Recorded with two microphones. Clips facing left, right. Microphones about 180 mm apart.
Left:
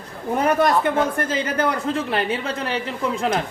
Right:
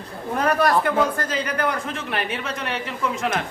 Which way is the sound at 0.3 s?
20° left (ahead or behind).